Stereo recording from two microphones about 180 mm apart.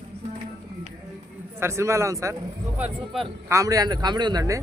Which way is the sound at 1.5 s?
15° right (ahead or behind).